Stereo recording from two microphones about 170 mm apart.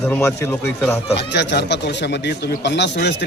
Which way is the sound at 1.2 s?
90° left.